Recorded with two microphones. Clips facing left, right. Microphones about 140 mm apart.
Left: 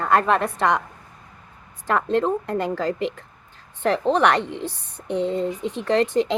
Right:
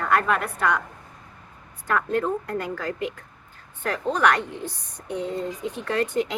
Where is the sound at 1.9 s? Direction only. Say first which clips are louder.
Left 3 dB; 25° left (ahead or behind).